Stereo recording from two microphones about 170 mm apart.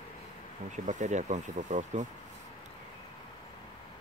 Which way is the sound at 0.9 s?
45° right (ahead or behind).